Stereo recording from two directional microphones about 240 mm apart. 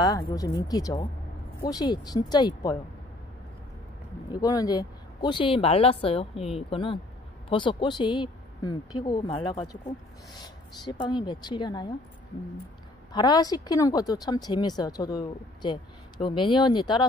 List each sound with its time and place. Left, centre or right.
0.0 s a woman's voice: centre
4.3 s a woman's voice: centre
10.9 s speech: centre
13.1 s a woman's voice: centre